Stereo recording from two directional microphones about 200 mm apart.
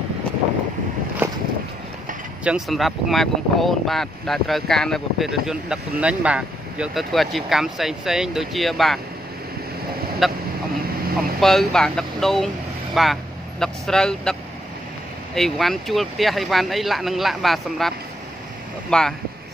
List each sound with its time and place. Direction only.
1.2 s a sound: 10° right (ahead or behind)
2.4 s speech: centre (ahead or behind)
10.2 s speech: centre (ahead or behind)
11.0 s vehicle: 50° right (ahead or behind)
11.4 s speech: centre (ahead or behind)
15.3 s speech: centre (ahead or behind)